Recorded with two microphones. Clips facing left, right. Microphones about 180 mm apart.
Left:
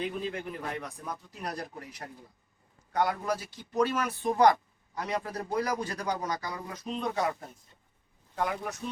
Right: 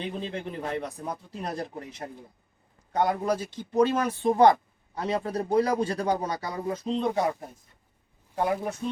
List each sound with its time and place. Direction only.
0.0 s a man's voice: 30° right (ahead or behind)